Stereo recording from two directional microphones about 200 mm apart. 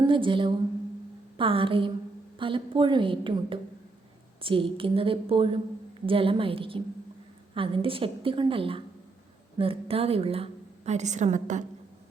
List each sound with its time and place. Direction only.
0.1 s a woman's voice: 25° right (ahead or behind)